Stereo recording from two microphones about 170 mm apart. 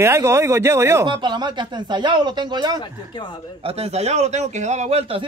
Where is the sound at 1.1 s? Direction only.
25° right (ahead or behind).